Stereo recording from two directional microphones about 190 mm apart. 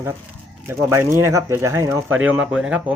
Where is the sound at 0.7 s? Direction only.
15° right (ahead or behind).